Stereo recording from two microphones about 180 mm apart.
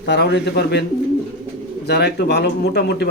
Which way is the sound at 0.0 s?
70° left (ahead or behind).